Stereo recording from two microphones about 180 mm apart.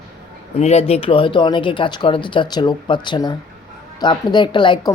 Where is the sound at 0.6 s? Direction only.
35° left (ahead or behind).